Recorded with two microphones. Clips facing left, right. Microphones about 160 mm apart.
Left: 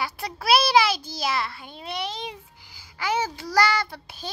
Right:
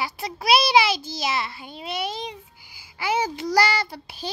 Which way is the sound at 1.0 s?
25° right (ahead or behind).